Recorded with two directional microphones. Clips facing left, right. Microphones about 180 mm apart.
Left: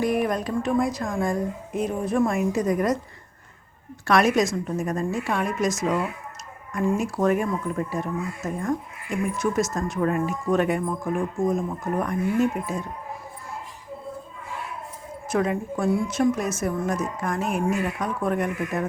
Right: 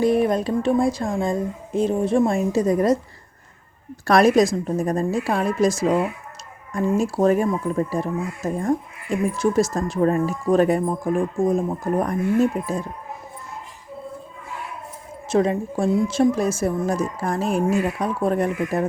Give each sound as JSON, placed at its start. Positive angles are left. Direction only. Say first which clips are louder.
{"t": 0.0, "sound": "a woman's voice", "louder": "right 5 dB", "side_deg": -30}
{"t": 4.0, "sound": "speech", "louder": "right 5 dB", "side_deg": -35}
{"t": 15.3, "sound": "speech", "louder": "right 4 dB", "side_deg": -30}